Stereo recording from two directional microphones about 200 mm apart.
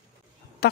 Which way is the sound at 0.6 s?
50° left (ahead or behind).